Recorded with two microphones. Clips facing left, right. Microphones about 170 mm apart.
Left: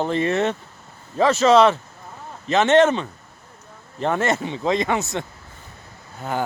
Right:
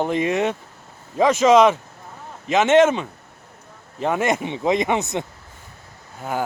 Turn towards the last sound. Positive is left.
turn(degrees=-5)  # may be behind; listen again after turning